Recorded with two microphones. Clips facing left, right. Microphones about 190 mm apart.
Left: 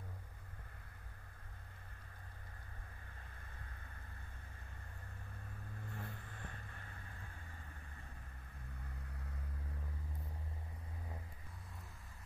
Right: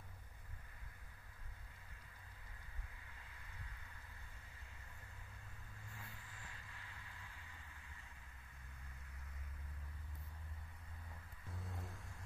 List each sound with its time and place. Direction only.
5.9 s vehicle: 55° left (ahead or behind)